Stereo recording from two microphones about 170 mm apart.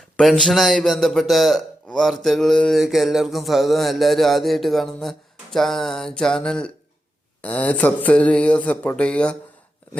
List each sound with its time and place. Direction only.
0.2 s a man's voice: centre (ahead or behind)